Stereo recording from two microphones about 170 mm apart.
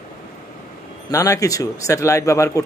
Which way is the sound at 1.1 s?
20° left (ahead or behind).